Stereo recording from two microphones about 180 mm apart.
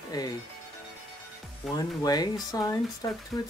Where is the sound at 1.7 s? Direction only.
20° left (ahead or behind).